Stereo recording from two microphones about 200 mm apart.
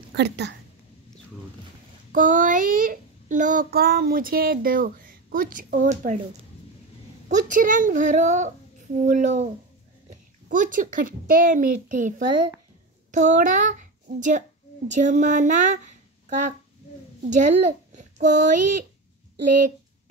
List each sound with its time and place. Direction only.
0.1 s a woman's voice: 55° right (ahead or behind)
2.1 s a child's voice: 40° right (ahead or behind)
7.2 s a child's voice: 40° right (ahead or behind)
17.3 s a child's voice: 40° right (ahead or behind)